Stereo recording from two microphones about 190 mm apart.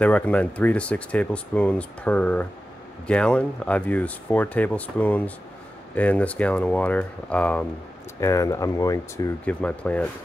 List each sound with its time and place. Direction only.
0.0 s speech: 5° left (ahead or behind)